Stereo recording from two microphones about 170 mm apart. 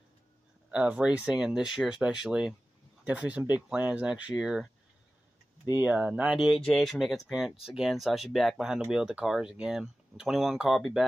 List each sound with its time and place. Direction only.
0.7 s speech: 5° right (ahead or behind)
5.7 s speech: 10° right (ahead or behind)